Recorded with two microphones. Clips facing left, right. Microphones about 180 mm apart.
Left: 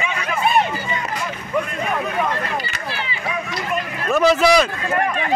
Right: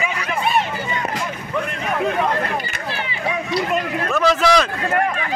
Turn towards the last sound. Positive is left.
turn(degrees=10)  # may be behind; listen again after turning